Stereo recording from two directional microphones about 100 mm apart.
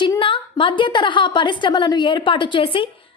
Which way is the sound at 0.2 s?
60° left (ahead or behind).